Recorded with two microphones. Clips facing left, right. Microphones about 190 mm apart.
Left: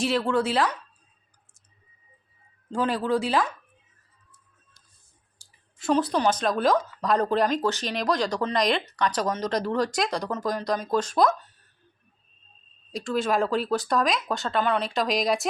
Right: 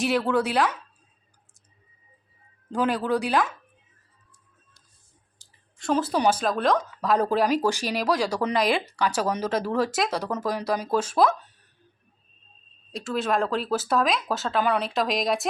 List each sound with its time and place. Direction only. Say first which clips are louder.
0.0 s speech: right 1 dB; centre (ahead or behind)
2.7 s speech: right 1 dB; centre (ahead or behind)
5.4 s a sound: right 1 dB; 10° left (ahead or behind)
5.8 s speech: even; centre (ahead or behind)
12.9 s speech: left 1 dB; centre (ahead or behind)